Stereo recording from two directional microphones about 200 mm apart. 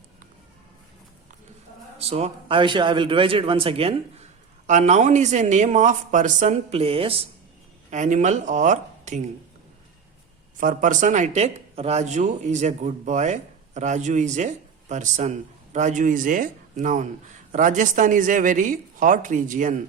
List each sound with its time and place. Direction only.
2.0 s a man's voice: 30° right (ahead or behind)
10.6 s a man's voice: 40° right (ahead or behind)